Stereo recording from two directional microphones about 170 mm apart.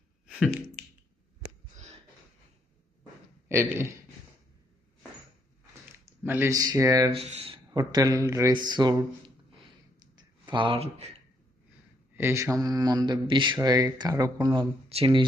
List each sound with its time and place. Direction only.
0.3 s a sound: centre (ahead or behind)
0.8 s finger snapping: 5° left (ahead or behind)
3.5 s speech: 15° right (ahead or behind)
6.2 s speech: 15° right (ahead or behind)
7.1 s speech: 35° right (ahead or behind)
7.7 s speech: 20° right (ahead or behind)
10.2 s a sound: 30° right (ahead or behind)
12.1 s speech: 15° right (ahead or behind)